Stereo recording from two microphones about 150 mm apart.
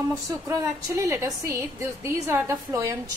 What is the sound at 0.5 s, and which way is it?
A woman's voice, 20° right (ahead or behind).